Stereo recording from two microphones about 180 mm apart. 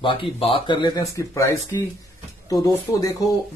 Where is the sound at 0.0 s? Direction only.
30° left (ahead or behind).